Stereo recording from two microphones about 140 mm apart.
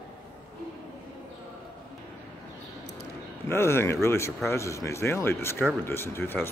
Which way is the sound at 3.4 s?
15° left (ahead or behind).